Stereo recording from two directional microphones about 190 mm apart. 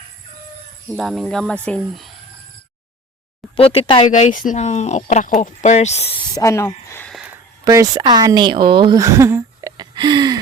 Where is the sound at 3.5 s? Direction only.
30° left (ahead or behind).